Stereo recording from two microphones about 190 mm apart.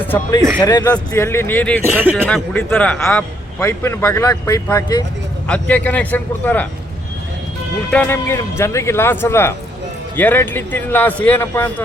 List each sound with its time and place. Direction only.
0.0 s a man's voice: 15° left (ahead or behind)
1.8 s speech: 10° right (ahead or behind)
2.2 s a man's voice: 5° left (ahead or behind)
5.5 s a man's voice: 10° left (ahead or behind)
7.9 s a man's voice: 10° left (ahead or behind)